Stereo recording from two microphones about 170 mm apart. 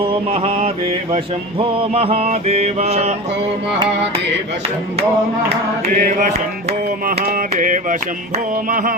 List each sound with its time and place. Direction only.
0.0 s mantra: 35° right (ahead or behind)
5.9 s mantra: 55° right (ahead or behind)
8.7 s a sound: 55° right (ahead or behind)